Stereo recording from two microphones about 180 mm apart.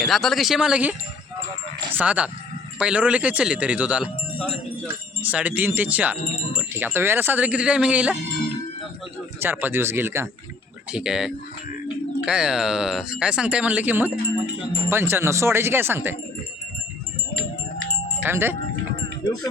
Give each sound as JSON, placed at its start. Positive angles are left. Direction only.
{"t": 0.0, "sound": "speech", "side_deg": 0}
{"t": 9.4, "sound": "speech", "side_deg": -10}
{"t": 18.3, "sound": "speech", "side_deg": -10}